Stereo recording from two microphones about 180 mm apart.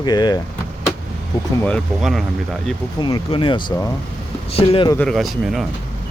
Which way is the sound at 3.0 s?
25° left (ahead or behind).